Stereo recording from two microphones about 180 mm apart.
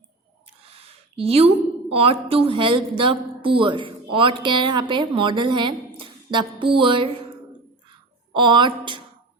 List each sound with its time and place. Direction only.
0.4 s a sound: 35° right (ahead or behind)
1.9 s a woman's voice: 30° right (ahead or behind)
8.3 s a woman's voice: 25° right (ahead or behind)